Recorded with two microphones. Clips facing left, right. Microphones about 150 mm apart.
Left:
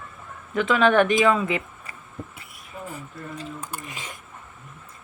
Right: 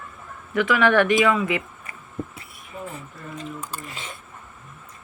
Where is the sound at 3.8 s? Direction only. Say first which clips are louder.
Right 1 dB; 15° left (ahead or behind).